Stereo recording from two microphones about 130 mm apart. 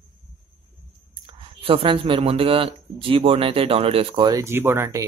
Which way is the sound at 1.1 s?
40° right (ahead or behind).